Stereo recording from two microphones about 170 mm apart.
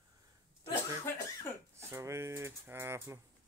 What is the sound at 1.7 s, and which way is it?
Speech, 15° right (ahead or behind).